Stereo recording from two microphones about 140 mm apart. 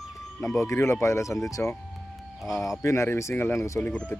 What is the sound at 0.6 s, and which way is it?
Speech, 20° left (ahead or behind).